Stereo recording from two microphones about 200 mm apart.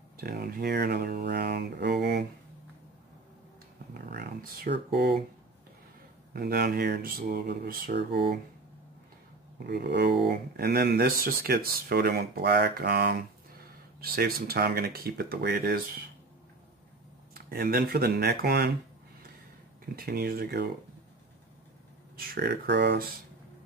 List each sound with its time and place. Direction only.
0.2 s speech: 50° right (ahead or behind)
4.1 s speech: 50° right (ahead or behind)
6.3 s speech: 50° right (ahead or behind)
9.6 s speech: 55° right (ahead or behind)
17.3 s speech: 50° right (ahead or behind)
20.0 s speech: 50° right (ahead or behind)
22.1 s speech: 50° right (ahead or behind)